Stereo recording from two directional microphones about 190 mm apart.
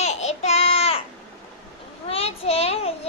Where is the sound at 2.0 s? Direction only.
30° left (ahead or behind).